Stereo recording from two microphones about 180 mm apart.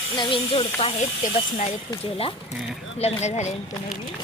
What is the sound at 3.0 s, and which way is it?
Speech, 40° left (ahead or behind).